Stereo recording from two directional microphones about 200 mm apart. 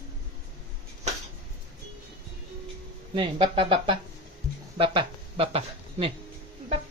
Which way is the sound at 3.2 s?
25° right (ahead or behind).